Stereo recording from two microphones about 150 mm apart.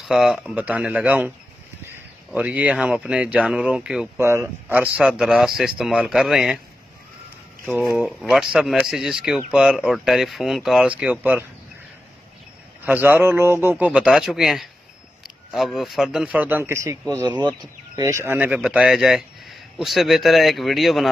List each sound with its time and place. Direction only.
0.0 s a man's voice: centre (ahead or behind)
4.2 s a man's voice: 20° right (ahead or behind); by 6.6 s centre (ahead or behind)
8.0 s speech: 5° right (ahead or behind)
12.8 s a man's voice: 10° right (ahead or behind)
17.2 s speech: 30° right (ahead or behind)
18.0 s speech: 15° right (ahead or behind)